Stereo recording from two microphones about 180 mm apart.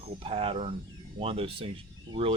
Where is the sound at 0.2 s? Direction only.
30° right (ahead or behind).